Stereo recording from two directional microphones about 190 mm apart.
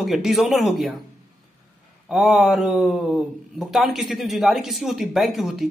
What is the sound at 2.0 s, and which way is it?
Speech, 5° right (ahead or behind).